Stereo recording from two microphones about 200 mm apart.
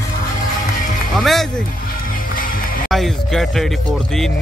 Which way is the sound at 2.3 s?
45° left (ahead or behind).